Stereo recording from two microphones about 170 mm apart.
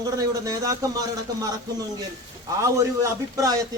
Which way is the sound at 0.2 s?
20° right (ahead or behind).